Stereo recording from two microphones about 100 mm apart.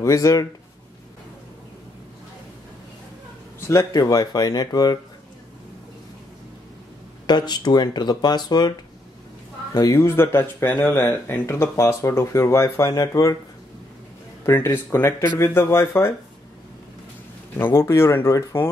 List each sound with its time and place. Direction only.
0.0 s speech: 30° left (ahead or behind)
3.6 s speech: 35° left (ahead or behind)
7.2 s speech: 45° left (ahead or behind)
9.9 s speech: 25° left (ahead or behind)
14.4 s speech: 25° left (ahead or behind)
17.6 s speech: 25° left (ahead or behind)